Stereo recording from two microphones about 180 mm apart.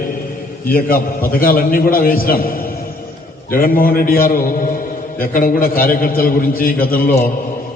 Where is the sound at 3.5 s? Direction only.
55° left (ahead or behind).